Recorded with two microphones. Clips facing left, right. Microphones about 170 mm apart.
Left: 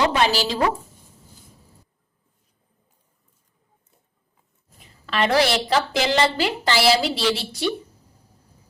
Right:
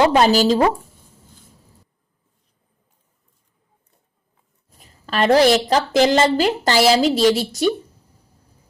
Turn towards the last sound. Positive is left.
turn(degrees=-45)  # may be behind; listen again after turning